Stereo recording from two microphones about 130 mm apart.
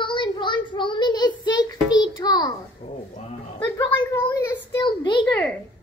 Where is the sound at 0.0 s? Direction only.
40° left (ahead or behind).